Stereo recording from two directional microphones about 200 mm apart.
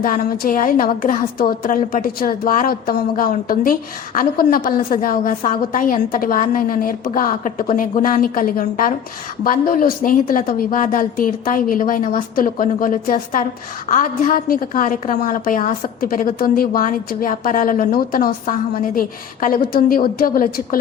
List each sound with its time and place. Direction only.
0.0 s a woman's voice: 45° left (ahead or behind)